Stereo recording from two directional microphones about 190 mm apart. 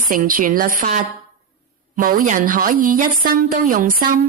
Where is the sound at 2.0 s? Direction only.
45° right (ahead or behind).